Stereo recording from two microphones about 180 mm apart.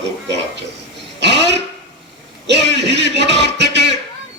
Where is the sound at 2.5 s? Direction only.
70° right (ahead or behind).